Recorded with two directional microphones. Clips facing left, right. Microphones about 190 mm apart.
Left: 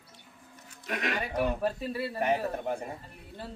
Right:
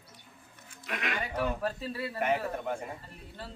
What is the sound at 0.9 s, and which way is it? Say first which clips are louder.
Speech: left 3 dB; 40° left (ahead or behind).